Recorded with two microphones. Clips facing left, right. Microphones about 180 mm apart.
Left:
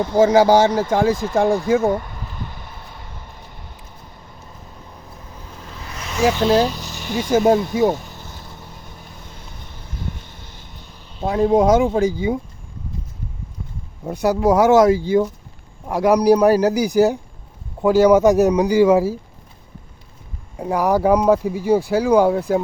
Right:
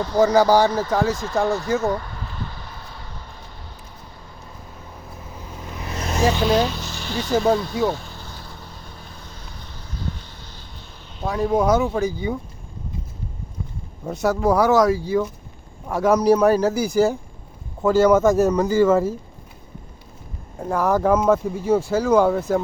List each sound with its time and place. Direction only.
0.0 s speech: 20° left (ahead or behind)
1.8 s a sound: 20° left (ahead or behind)
5.3 s vehicle: 10° right (ahead or behind)
5.9 s vehicle: 40° right (ahead or behind)
6.4 s speech: centre (ahead or behind)
6.7 s vehicle: 15° left (ahead or behind)
11.2 s speech: 25° left (ahead or behind)
14.0 s speech: 15° left (ahead or behind)
15.9 s speech: 15° left (ahead or behind)
20.7 s speech: 15° left (ahead or behind)